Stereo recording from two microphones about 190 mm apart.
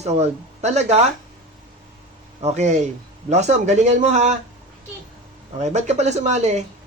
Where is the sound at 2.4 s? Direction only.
35° right (ahead or behind).